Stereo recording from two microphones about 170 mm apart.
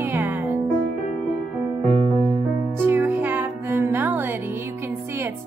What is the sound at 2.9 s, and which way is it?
Music, 10° right (ahead or behind).